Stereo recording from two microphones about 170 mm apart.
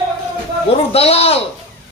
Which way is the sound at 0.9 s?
35° left (ahead or behind).